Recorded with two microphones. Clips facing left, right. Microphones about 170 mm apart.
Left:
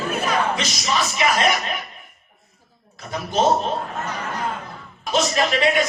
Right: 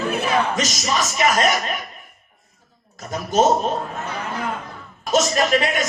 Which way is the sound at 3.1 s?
45° right (ahead or behind).